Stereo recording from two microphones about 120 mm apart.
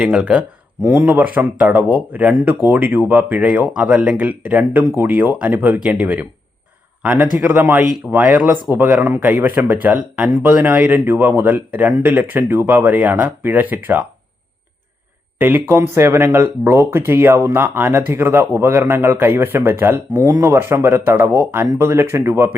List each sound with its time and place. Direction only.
0.0 s speech: 10° right (ahead or behind)
0.8 s a man's voice: 20° right (ahead or behind)
15.4 s speech: 15° right (ahead or behind)